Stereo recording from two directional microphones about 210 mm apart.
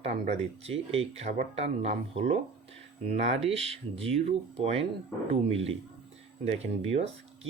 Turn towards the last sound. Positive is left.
turn(degrees=-30)  # may be behind; listen again after turning